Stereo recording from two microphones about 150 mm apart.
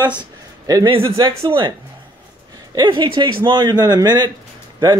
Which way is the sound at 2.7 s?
30° right (ahead or behind).